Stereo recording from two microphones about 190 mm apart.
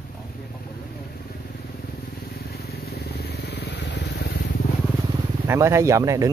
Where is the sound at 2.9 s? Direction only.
55° left (ahead or behind).